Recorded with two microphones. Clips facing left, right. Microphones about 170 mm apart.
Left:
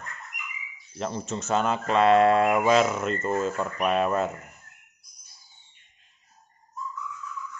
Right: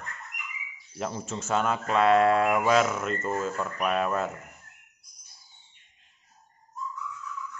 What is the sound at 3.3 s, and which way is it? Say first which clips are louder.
Speech: left 3 dB; 25° left (ahead or behind).